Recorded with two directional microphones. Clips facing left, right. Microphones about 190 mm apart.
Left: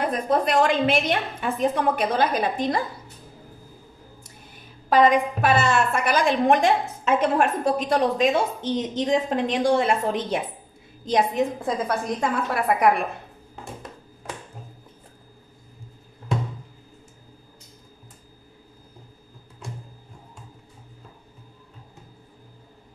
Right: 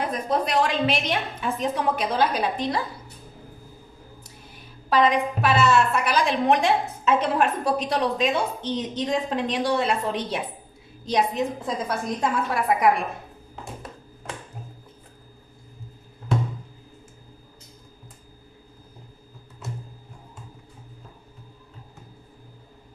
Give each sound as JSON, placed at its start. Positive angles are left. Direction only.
{"t": 0.0, "sound": "a woman's voice", "side_deg": 55}
{"t": 4.8, "sound": "a woman's voice", "side_deg": 50}